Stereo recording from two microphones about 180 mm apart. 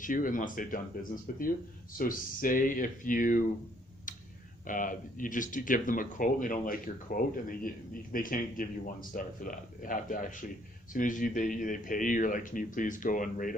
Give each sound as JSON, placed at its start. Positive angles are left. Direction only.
{"t": 0.0, "sound": "speech", "side_deg": 50}
{"t": 4.6, "sound": "speech", "side_deg": 50}